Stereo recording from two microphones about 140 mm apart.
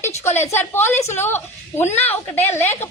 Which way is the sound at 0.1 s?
55° left (ahead or behind).